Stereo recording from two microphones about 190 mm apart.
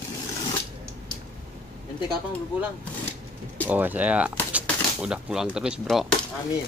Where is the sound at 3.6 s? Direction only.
10° right (ahead or behind).